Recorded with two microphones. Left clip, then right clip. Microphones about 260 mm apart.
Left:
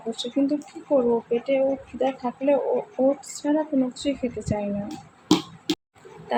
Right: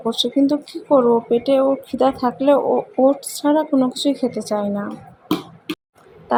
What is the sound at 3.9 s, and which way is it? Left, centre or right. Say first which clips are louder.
Speech: right 7 dB; right.